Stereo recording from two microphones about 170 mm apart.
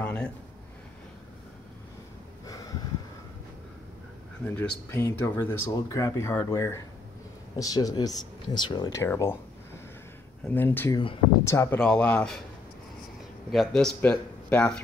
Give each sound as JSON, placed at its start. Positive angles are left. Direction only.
{"t": 0.0, "sound": "a sound", "side_deg": 5}
{"t": 4.6, "sound": "speech", "side_deg": 10}
{"t": 10.4, "sound": "speech", "side_deg": 10}
{"t": 11.8, "sound": "speech", "side_deg": 5}
{"t": 13.5, "sound": "speech", "side_deg": 0}